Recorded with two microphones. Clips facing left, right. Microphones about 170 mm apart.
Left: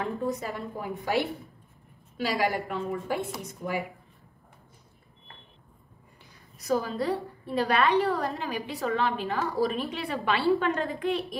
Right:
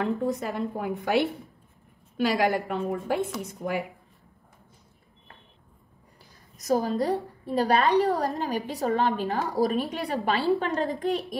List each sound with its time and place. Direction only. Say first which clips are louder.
0.0 s a woman's voice: right 3 dB; 60° right (ahead or behind)
2.2 s a woman's voice: right 3 dB; 55° right (ahead or behind)
6.6 s a woman's voice: right 3 dB; 40° right (ahead or behind)